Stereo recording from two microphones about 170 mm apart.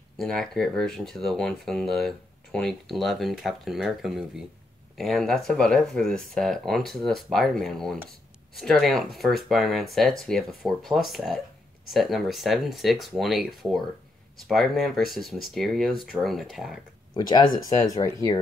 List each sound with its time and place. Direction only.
0.2 s speech: 5° left (ahead or behind)
17.1 s speech: 25° left (ahead or behind)